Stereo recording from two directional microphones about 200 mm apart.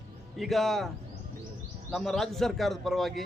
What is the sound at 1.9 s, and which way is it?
A man's voice, centre (ahead or behind).